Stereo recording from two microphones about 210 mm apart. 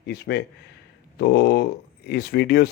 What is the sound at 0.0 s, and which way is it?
A man's voice, 50° left (ahead or behind).